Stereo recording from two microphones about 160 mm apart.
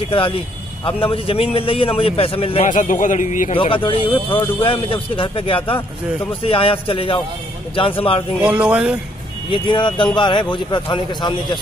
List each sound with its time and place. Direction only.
1.0 s speech: 35° left (ahead or behind)
2.7 s a man's voice: 55° left (ahead or behind)
3.5 s speech: 35° left (ahead or behind)
8.4 s speech: 5° right (ahead or behind)
9.5 s speech: 30° left (ahead or behind)